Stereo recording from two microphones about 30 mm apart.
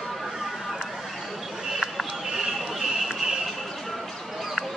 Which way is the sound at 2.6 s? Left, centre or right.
Centre.